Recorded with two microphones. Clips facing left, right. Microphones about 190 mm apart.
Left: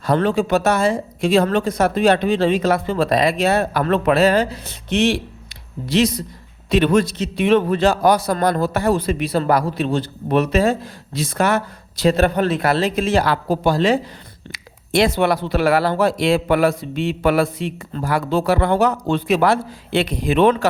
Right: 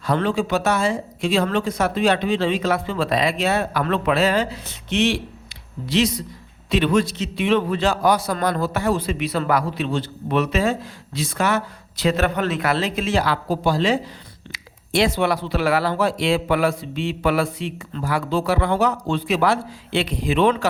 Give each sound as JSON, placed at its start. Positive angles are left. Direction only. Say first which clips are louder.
{"t": 0.0, "sound": "a man's voice", "louder": "left 3 dB", "side_deg": 45}
{"t": 6.7, "sound": "a man's voice", "louder": "left 3 dB", "side_deg": 50}
{"t": 11.9, "sound": "a man's voice", "louder": "left 4 dB", "side_deg": 35}
{"t": 15.1, "sound": "a man's voice", "louder": "left 3 dB", "side_deg": 55}